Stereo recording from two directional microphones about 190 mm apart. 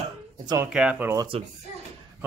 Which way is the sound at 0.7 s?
5° right (ahead or behind).